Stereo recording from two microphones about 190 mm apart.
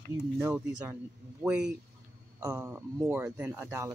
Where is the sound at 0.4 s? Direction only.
10° right (ahead or behind).